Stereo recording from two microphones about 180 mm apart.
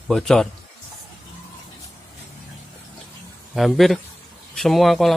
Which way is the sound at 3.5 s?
Centre (ahead or behind).